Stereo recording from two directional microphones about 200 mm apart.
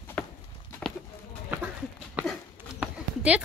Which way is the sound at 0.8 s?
Centre (ahead or behind).